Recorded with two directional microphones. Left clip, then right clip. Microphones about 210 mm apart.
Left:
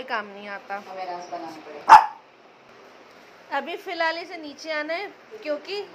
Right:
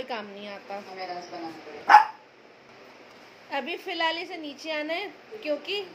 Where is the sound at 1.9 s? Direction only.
5° left (ahead or behind).